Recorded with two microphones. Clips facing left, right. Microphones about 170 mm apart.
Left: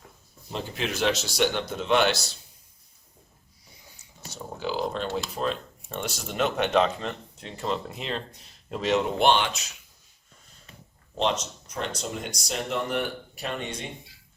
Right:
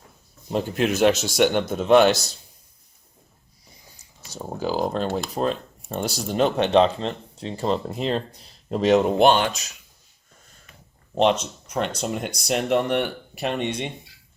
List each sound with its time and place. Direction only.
0.5 s a man's voice: 50° right (ahead or behind)
4.6 s speech: 40° right (ahead or behind)
11.2 s speech: 60° right (ahead or behind); by 13.9 s 75° right (ahead or behind)